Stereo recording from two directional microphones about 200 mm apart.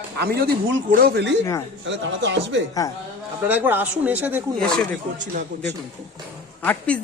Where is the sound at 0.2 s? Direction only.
55° right (ahead or behind).